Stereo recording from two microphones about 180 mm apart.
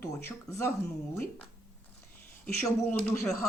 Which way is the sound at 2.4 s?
5° left (ahead or behind).